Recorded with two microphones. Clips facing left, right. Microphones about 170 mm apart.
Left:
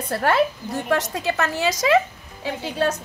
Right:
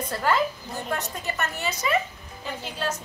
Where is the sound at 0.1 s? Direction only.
70° left (ahead or behind); by 2.0 s 90° left.